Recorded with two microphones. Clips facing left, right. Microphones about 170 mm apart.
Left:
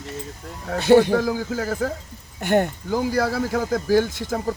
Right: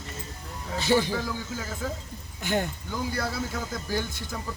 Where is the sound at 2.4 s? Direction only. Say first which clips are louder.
Left 8 dB; 60° left (ahead or behind).